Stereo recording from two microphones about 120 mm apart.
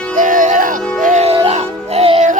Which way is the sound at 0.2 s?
90° right.